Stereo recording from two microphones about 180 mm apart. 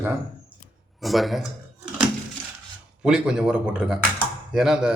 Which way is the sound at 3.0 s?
5° right (ahead or behind).